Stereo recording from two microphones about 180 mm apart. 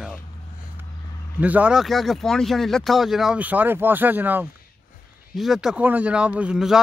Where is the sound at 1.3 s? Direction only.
10° right (ahead or behind).